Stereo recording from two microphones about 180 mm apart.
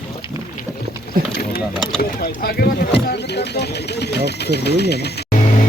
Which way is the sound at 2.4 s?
65° left (ahead or behind).